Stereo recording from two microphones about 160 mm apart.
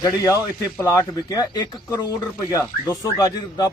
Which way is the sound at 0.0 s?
20° left (ahead or behind).